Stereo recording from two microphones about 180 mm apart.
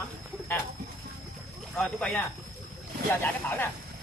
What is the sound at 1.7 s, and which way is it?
Speech, 5° left (ahead or behind).